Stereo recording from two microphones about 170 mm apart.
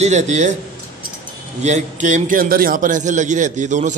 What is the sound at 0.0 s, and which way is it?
Speech, 45° right (ahead or behind).